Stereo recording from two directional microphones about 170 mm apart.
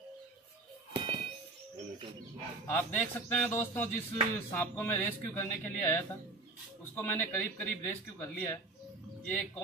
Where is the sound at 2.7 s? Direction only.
10° left (ahead or behind).